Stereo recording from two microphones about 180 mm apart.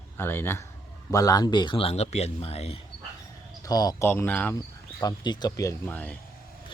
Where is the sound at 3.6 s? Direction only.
20° left (ahead or behind).